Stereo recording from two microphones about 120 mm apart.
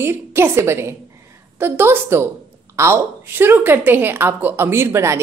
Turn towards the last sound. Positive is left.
turn(degrees=-20)  # may be behind; listen again after turning